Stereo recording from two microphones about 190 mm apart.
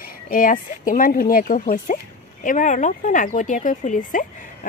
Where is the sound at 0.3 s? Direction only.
45° left (ahead or behind).